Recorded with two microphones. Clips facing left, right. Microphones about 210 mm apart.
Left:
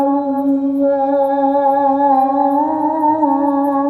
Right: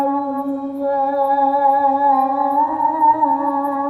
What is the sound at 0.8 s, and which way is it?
Music, 55° left (ahead or behind).